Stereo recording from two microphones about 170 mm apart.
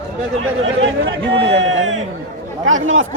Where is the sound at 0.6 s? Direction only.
90° right.